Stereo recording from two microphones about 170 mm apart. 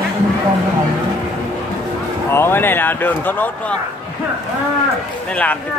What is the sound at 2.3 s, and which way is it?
Speech, 15° left (ahead or behind).